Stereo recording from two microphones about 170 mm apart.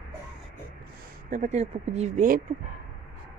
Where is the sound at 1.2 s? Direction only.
45° right (ahead or behind).